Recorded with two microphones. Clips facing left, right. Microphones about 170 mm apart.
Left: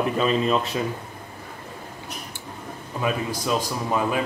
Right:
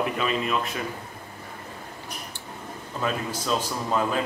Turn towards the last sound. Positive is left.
turn(degrees=10)  # may be behind; listen again after turning